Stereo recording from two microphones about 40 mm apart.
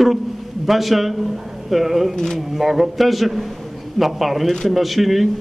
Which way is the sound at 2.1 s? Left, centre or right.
Centre.